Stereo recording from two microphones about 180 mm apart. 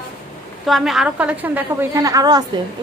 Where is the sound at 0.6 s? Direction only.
Centre (ahead or behind).